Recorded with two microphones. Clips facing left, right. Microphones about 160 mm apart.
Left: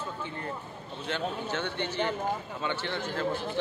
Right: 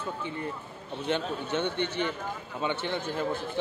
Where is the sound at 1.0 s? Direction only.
20° right (ahead or behind).